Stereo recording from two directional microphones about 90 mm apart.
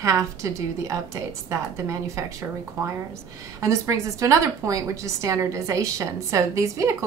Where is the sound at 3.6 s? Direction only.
35° right (ahead or behind).